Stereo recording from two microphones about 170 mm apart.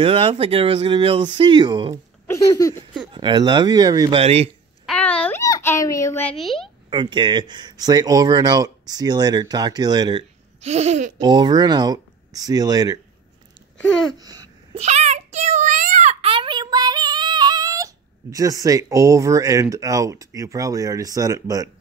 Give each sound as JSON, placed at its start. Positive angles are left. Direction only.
{"t": 0.0, "sound": "speech", "side_deg": -35}
{"t": 2.2, "sound": "speech", "side_deg": 20}
{"t": 3.1, "sound": "speech", "side_deg": -30}
{"t": 4.2, "sound": "speech", "side_deg": -35}
{"t": 4.8, "sound": "babbling", "side_deg": 5}
{"t": 5.4, "sound": "a sound", "side_deg": 15}
{"t": 6.3, "sound": "a woman's voice", "side_deg": 0}
{"t": 6.9, "sound": "speech", "side_deg": -25}
{"t": 10.6, "sound": "speech", "side_deg": -40}
{"t": 11.1, "sound": "speech", "side_deg": -25}
{"t": 13.7, "sound": "babbling", "side_deg": 5}
{"t": 14.1, "sound": "babbling", "side_deg": -20}
{"t": 14.7, "sound": "a sound", "side_deg": -40}